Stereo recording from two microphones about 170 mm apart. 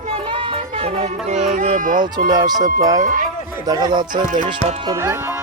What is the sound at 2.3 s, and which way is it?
Speech, 25° right (ahead or behind).